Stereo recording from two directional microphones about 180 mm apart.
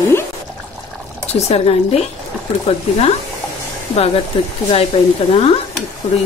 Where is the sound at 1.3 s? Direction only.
35° left (ahead or behind).